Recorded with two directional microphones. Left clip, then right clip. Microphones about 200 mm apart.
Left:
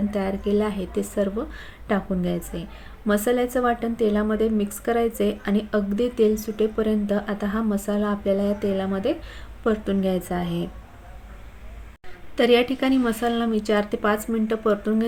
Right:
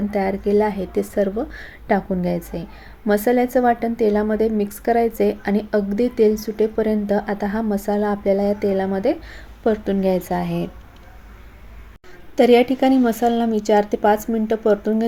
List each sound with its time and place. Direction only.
0.1 s a woman's voice: 5° right (ahead or behind)
12.4 s a woman's voice: 10° right (ahead or behind)